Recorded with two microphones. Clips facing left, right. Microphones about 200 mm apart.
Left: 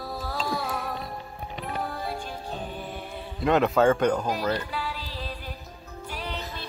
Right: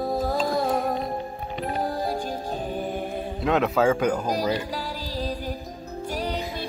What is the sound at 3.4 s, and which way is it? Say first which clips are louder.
Speech: left 1 dB; centre (ahead or behind).